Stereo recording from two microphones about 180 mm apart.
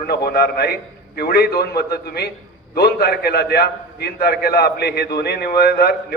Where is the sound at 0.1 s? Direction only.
60° left (ahead or behind).